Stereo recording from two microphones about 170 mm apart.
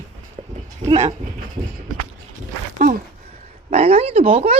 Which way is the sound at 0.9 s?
35° right (ahead or behind).